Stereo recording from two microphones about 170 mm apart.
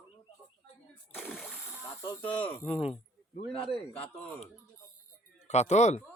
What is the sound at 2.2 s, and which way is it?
Speech, 10° left (ahead or behind).